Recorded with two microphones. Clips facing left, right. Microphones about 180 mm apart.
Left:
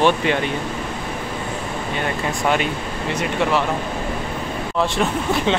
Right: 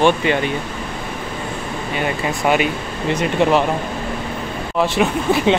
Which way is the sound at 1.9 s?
10° right (ahead or behind).